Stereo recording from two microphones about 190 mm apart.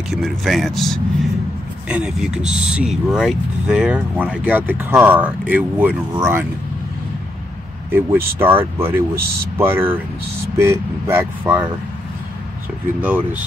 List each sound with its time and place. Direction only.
0.1 s speech: centre (ahead or behind)
7.9 s speech: 10° right (ahead or behind)
13.0 s speech: 10° right (ahead or behind)